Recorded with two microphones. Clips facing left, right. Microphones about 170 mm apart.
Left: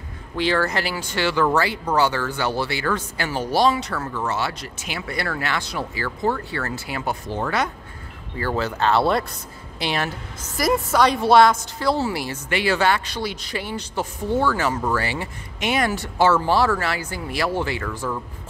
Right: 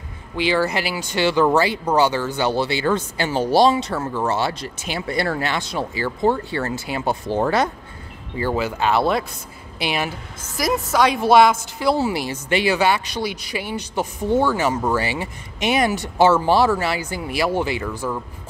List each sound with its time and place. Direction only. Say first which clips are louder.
0.4 s speech: right 2 dB; 5° right (ahead or behind); by 7.7 s 35° right (ahead or behind)
8.4 s a woman's voice: right 2 dB; 15° right (ahead or behind)